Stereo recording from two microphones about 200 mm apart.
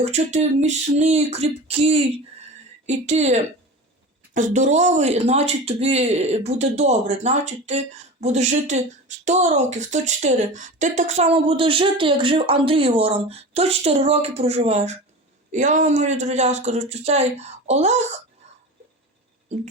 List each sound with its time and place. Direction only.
0.0 s speech: 35° right (ahead or behind)